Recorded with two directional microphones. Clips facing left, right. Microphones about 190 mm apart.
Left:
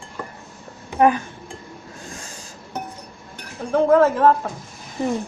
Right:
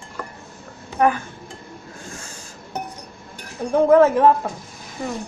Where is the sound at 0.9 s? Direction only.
20° left (ahead or behind).